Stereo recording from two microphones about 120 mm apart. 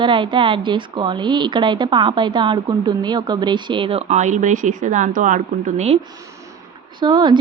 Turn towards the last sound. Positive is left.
turn(degrees=-35)  # may be behind; listen again after turning